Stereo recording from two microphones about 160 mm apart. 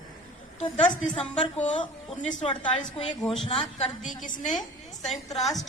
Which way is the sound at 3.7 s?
45° left (ahead or behind).